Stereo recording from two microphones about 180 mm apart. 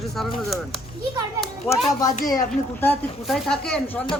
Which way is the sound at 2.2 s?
15° left (ahead or behind).